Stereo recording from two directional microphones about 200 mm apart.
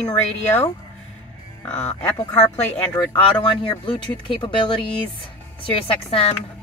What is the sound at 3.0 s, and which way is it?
Speech, 25° left (ahead or behind).